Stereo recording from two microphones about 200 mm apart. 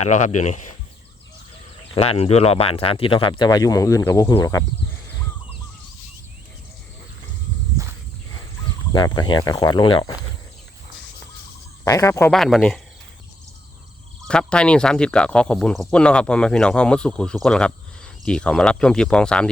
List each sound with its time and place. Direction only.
0.0 s speech: 35° left (ahead or behind)
2.0 s speech: 30° left (ahead or behind)
8.9 s speech: 20° left (ahead or behind)
11.9 s speech: 15° left (ahead or behind)
12.3 s speech: centre (ahead or behind)
14.3 s speech: 5° left (ahead or behind)